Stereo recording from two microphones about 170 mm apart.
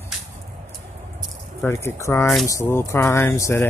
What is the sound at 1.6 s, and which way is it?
Speech, 15° left (ahead or behind).